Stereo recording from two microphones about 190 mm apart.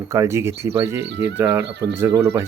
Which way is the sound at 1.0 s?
65° right (ahead or behind).